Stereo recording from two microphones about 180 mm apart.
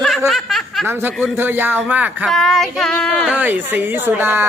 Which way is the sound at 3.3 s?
10° right (ahead or behind).